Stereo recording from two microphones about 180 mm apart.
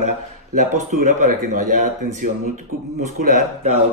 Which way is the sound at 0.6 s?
45° right (ahead or behind).